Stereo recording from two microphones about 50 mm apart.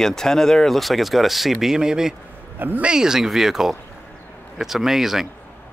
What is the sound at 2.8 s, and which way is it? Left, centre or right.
Speech, centre.